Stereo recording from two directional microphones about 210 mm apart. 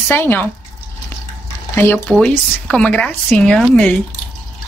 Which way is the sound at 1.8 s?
5° left (ahead or behind).